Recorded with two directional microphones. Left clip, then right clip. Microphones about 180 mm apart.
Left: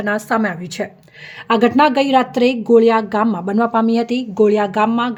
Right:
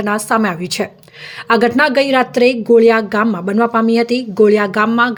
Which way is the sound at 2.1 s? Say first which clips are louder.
Right 2 dB; 40° right (ahead or behind).